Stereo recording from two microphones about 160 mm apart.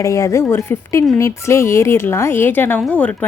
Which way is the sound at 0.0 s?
20° left (ahead or behind).